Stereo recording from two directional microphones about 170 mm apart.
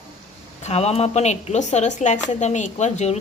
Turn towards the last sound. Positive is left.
turn(degrees=40)  # may be behind; listen again after turning